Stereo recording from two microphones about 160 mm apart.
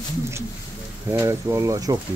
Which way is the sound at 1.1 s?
20° right (ahead or behind).